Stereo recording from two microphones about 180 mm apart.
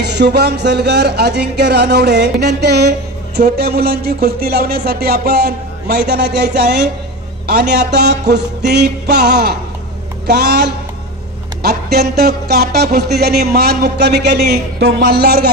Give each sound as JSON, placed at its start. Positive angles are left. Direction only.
{"t": 0.0, "sound": "music", "side_deg": -65}